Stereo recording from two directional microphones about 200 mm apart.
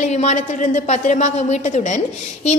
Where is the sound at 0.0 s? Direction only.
35° left (ahead or behind).